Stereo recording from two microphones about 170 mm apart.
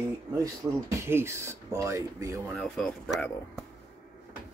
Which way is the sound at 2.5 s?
5° left (ahead or behind).